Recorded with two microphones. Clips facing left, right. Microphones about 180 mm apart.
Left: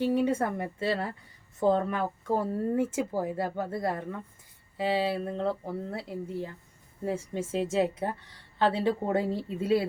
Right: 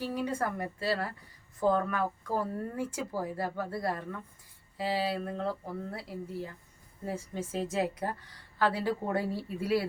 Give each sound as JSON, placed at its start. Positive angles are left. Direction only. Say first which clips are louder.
{"t": 0.0, "sound": "speech", "louder": "left 6 dB", "side_deg": 25}